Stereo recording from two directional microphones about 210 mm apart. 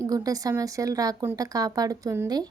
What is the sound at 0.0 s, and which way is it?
Speech, 15° right (ahead or behind).